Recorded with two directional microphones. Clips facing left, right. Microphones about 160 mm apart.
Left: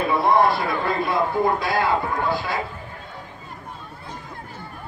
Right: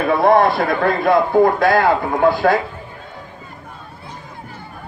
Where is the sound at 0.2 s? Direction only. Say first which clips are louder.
Right 5 dB; 60° right (ahead or behind).